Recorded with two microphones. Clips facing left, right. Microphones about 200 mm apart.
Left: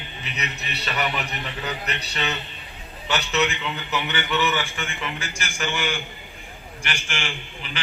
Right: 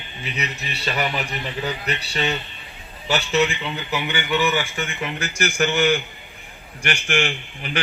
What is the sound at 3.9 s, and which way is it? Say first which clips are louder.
Speech: right 3 dB; 10° right (ahead or behind).